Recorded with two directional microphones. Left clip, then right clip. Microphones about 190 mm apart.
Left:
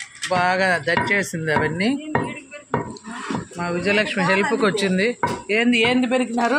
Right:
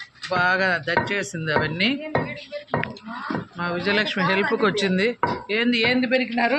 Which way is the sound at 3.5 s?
5° left (ahead or behind).